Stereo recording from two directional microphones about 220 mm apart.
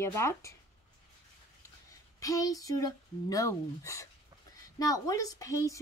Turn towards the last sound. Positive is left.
turn(degrees=15)  # may be behind; listen again after turning